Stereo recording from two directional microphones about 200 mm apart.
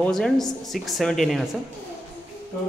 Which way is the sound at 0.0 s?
5° left (ahead or behind).